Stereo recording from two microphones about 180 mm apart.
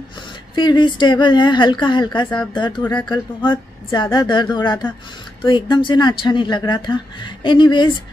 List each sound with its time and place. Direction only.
0.6 s speech: 25° left (ahead or behind)